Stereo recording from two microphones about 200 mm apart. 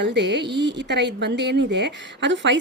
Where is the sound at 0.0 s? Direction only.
60° right (ahead or behind).